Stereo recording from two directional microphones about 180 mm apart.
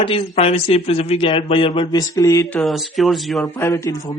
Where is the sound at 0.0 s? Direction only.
30° left (ahead or behind).